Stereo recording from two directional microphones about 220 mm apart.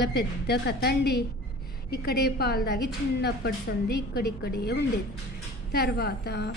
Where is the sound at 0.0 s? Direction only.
50° left (ahead or behind).